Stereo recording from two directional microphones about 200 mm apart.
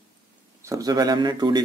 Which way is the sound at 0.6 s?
15° right (ahead or behind).